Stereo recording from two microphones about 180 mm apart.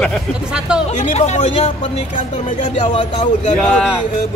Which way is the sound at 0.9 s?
40° left (ahead or behind).